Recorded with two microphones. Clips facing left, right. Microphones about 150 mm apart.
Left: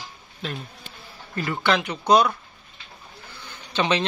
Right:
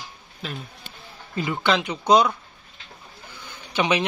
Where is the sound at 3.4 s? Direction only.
15° right (ahead or behind).